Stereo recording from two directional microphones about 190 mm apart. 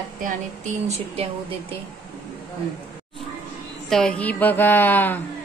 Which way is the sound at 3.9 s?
5° left (ahead or behind).